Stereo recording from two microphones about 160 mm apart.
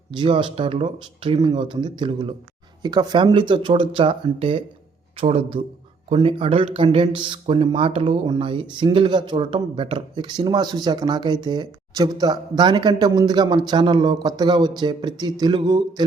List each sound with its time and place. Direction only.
0.2 s speech: 30° right (ahead or behind)